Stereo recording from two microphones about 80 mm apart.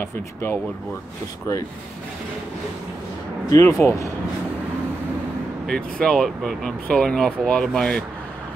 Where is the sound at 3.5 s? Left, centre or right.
Left.